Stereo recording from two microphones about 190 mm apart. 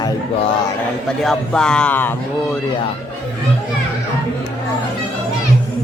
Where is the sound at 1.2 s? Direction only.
5° left (ahead or behind).